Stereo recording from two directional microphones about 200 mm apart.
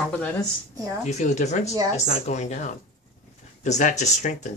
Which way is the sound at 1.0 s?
35° left (ahead or behind).